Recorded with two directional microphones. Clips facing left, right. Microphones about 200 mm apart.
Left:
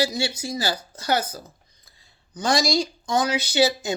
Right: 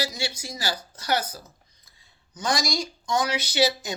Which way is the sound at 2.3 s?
30° left (ahead or behind).